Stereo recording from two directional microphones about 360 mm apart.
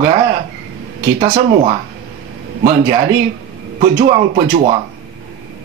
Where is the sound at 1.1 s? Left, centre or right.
Centre.